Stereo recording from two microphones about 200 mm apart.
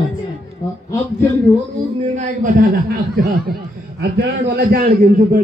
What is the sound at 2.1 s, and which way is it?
A man's voice, 45° right (ahead or behind).